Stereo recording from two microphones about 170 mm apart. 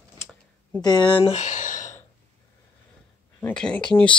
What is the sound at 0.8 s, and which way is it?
Speech, 25° left (ahead or behind).